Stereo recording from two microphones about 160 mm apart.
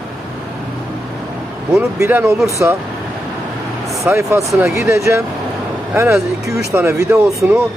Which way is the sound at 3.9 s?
15° right (ahead or behind).